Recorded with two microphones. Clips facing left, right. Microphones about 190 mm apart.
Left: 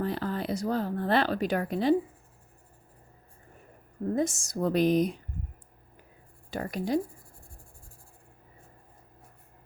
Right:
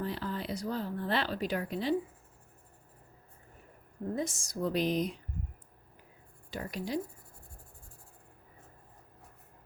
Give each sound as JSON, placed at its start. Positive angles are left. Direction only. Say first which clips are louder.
{"t": 0.0, "sound": "speech", "louder": "left 5 dB", "side_deg": 50}
{"t": 4.1, "sound": "speech", "louder": "left 7 dB", "side_deg": 45}
{"t": 6.5, "sound": "speech", "louder": "left 6 dB", "side_deg": 50}